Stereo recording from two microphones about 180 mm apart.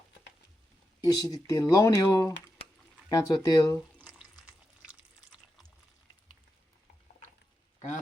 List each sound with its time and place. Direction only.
1.0 s speech: 20° left (ahead or behind)
3.8 s drip: centre (ahead or behind)